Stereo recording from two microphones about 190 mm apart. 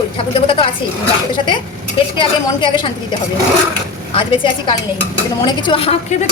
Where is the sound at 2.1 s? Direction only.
25° left (ahead or behind).